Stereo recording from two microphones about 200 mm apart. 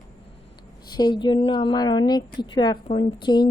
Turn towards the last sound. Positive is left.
turn(degrees=20)  # may be behind; listen again after turning